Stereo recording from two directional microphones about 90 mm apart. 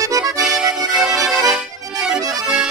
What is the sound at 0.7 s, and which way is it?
Accordion, 5° right (ahead or behind).